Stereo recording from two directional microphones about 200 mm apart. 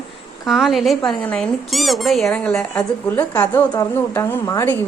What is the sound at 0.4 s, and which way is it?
A woman's voice, centre (ahead or behind).